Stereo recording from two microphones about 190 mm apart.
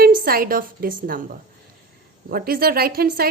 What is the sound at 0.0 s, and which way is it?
A woman's voice, 50° right (ahead or behind).